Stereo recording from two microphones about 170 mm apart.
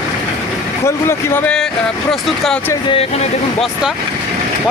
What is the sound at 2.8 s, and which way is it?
Speech, 35° left (ahead or behind).